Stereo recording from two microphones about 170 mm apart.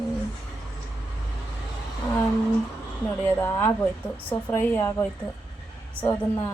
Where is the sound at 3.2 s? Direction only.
15° left (ahead or behind).